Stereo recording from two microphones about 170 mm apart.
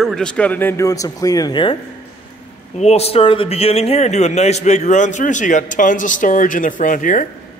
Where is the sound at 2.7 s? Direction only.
40° left (ahead or behind).